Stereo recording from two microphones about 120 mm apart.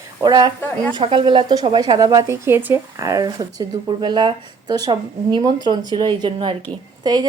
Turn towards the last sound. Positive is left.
turn(degrees=-35)  # may be behind; listen again after turning